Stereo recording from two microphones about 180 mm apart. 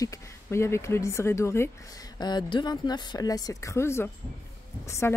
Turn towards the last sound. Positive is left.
turn(degrees=15)  # may be behind; listen again after turning